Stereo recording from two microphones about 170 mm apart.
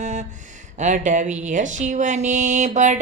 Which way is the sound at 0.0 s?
45° right (ahead or behind).